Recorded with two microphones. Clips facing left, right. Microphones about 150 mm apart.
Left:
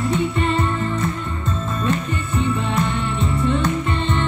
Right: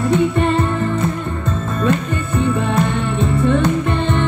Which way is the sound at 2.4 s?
55° right (ahead or behind).